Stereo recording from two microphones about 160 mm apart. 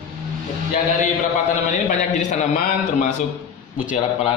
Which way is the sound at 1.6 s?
50° left (ahead or behind).